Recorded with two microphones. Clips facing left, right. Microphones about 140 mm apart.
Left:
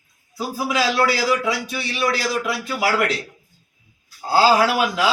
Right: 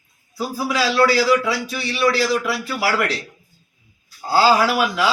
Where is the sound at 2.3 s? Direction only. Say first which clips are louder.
Right 2 dB; centre (ahead or behind).